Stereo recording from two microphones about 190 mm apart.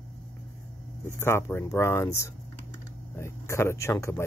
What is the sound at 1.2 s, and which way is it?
Speech, 15° left (ahead or behind).